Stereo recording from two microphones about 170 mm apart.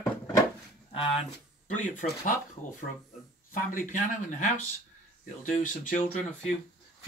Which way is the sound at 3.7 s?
50° left (ahead or behind).